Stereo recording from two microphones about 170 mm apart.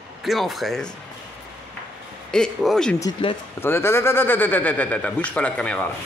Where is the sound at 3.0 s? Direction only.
25° left (ahead or behind).